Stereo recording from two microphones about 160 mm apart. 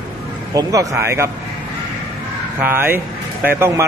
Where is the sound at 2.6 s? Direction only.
15° right (ahead or behind).